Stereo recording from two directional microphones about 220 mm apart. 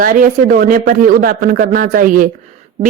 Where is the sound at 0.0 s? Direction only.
40° right (ahead or behind).